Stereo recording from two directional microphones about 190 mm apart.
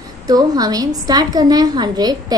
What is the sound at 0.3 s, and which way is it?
A woman's voice, 20° right (ahead or behind).